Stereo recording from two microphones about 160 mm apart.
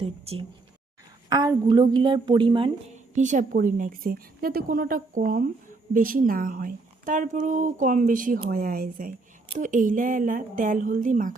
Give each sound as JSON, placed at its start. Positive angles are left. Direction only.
{"t": 0.0, "sound": "speech", "side_deg": -35}
{"t": 1.3, "sound": "speech", "side_deg": -25}
{"t": 2.9, "sound": "a woman's voice", "side_deg": -50}
{"t": 9.6, "sound": "a woman's voice", "side_deg": -55}